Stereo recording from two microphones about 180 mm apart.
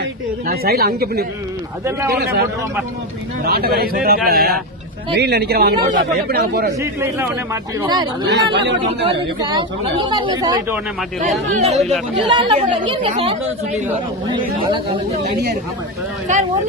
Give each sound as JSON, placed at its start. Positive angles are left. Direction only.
{"t": 0.0, "sound": "speech", "side_deg": -55}
{"t": 7.0, "sound": "speech", "side_deg": -10}
{"t": 8.3, "sound": "speech", "side_deg": -80}
{"t": 8.9, "sound": "speech", "side_deg": -30}
{"t": 11.5, "sound": "speech", "side_deg": -40}
{"t": 12.3, "sound": "speech", "side_deg": -30}